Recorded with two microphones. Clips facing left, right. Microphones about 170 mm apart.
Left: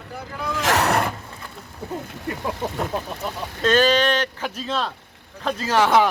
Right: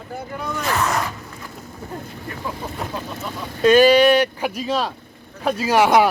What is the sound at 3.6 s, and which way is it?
Speech, 10° right (ahead or behind).